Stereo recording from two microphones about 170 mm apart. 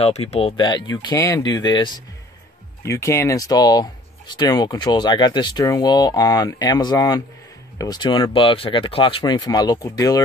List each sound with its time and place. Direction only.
0.0 s speech: 35° left (ahead or behind); by 10.2 s 20° left (ahead or behind)